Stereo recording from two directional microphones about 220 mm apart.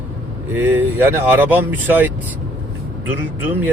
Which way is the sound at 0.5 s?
10° right (ahead or behind).